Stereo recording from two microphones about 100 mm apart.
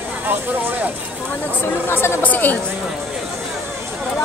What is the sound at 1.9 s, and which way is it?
Speech, 20° left (ahead or behind).